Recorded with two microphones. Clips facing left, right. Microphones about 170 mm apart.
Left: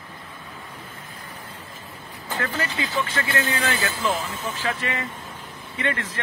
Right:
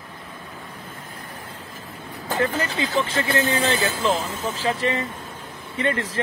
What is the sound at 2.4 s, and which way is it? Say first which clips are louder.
Speech: right 4 dB; 35° right (ahead or behind).